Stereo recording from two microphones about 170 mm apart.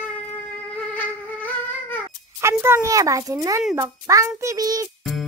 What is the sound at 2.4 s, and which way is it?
A child's voice, 15° right (ahead or behind).